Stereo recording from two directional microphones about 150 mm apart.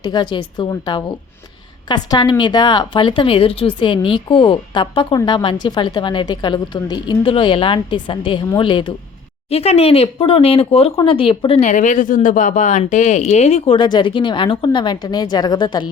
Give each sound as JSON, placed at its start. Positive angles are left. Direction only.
{"t": 0.0, "sound": "a woman's voice", "side_deg": 30}
{"t": 11.6, "sound": "speech", "side_deg": 55}
{"t": 13.7, "sound": "a woman's voice", "side_deg": 30}